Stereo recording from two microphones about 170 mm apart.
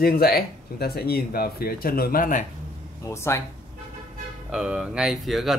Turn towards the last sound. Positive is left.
turn(degrees=0)  # may be behind; listen again after turning